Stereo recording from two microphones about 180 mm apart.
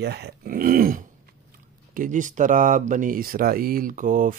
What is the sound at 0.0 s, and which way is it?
Speech, 65° right (ahead or behind).